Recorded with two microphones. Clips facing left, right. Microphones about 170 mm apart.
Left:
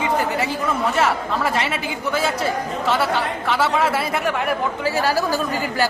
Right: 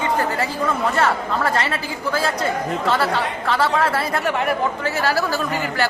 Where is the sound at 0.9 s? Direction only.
5° left (ahead or behind).